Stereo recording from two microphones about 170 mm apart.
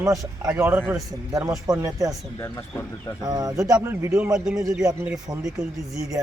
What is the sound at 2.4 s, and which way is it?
Speech, 10° left (ahead or behind).